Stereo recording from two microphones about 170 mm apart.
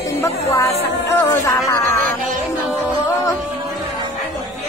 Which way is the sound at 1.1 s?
15° left (ahead or behind).